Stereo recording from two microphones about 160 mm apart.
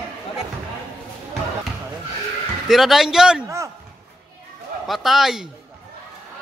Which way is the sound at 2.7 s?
Centre (ahead or behind).